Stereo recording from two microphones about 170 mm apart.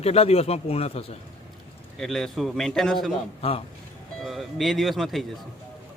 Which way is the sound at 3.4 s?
35° left (ahead or behind).